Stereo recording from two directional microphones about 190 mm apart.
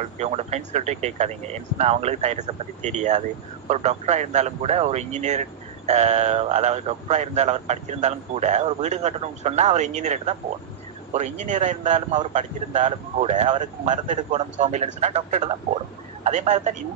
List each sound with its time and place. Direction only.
0.0 s speech: 35° right (ahead or behind)